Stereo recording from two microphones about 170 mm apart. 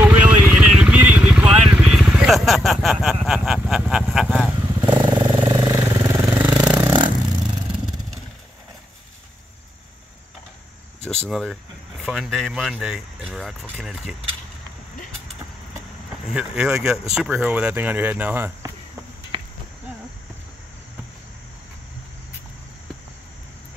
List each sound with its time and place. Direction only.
0.0 s vehicle: 10° right (ahead or behind)
4.9 s vehicle: 30° right (ahead or behind)
6.7 s a sound: 25° right (ahead or behind)
11.2 s speech: centre (ahead or behind)
16.3 s speech: 5° right (ahead or behind)
19.3 s chop: 30° right (ahead or behind)